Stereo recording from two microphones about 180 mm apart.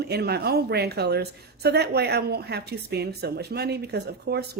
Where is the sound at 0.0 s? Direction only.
65° right (ahead or behind).